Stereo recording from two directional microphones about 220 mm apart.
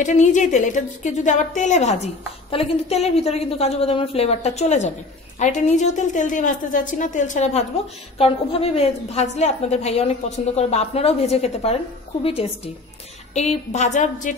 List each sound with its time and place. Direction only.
0.0 s a woman's voice: 35° left (ahead or behind)